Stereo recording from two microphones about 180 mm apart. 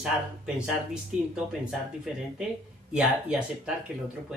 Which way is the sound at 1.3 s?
5° right (ahead or behind).